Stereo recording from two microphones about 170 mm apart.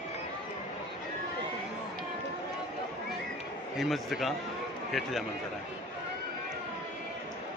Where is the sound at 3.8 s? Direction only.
Centre (ahead or behind).